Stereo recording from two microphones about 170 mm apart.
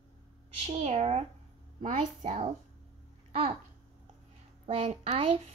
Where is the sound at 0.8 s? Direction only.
40° right (ahead or behind).